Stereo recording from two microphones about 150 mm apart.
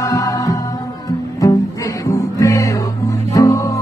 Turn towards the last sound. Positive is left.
turn(degrees=20)  # may be behind; listen again after turning